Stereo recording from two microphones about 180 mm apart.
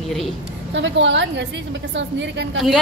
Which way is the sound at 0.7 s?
85° right.